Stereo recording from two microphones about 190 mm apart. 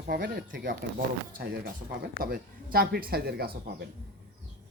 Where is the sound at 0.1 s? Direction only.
60° right (ahead or behind).